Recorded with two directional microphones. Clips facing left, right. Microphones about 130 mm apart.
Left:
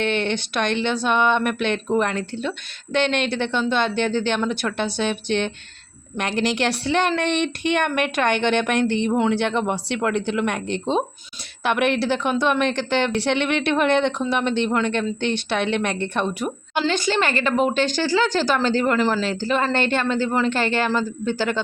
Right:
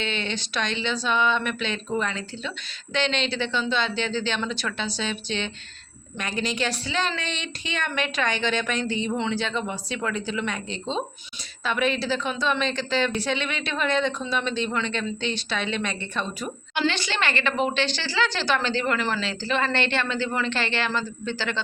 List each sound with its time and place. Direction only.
0.0 s a woman's voice: 60° left (ahead or behind)
6.1 s a woman's voice: 70° left (ahead or behind)
16.7 s a woman's voice: 40° left (ahead or behind)